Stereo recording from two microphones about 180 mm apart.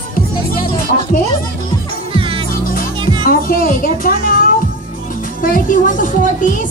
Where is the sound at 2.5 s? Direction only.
50° left (ahead or behind).